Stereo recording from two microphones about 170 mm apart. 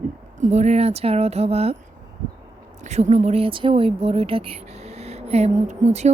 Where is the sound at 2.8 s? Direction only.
45° right (ahead or behind).